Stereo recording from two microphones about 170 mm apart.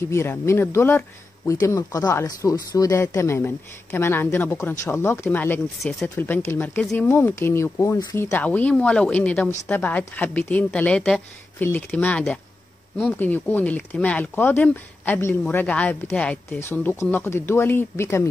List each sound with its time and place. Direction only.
0.1 s speech: 15° left (ahead or behind)
5.8 s speech: centre (ahead or behind)
6.1 s speech: 15° left (ahead or behind)